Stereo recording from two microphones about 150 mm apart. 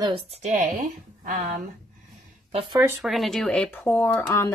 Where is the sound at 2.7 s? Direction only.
15° right (ahead or behind).